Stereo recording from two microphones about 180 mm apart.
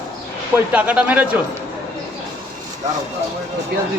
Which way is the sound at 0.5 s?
10° right (ahead or behind).